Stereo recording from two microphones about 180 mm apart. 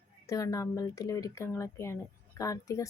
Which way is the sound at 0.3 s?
15° left (ahead or behind).